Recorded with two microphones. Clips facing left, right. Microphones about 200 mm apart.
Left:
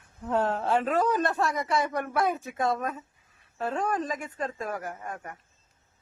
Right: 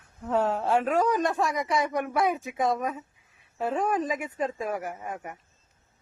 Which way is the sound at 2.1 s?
Centre (ahead or behind).